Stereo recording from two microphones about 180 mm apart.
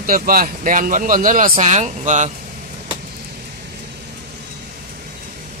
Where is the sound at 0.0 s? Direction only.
50° right (ahead or behind).